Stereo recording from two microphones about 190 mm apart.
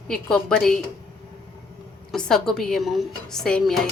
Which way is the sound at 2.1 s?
5° left (ahead or behind).